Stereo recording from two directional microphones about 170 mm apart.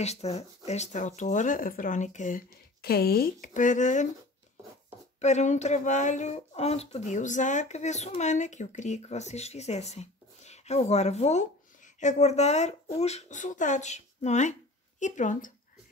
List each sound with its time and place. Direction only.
0.0 s speech: 40° left (ahead or behind)
5.2 s speech: 45° left (ahead or behind)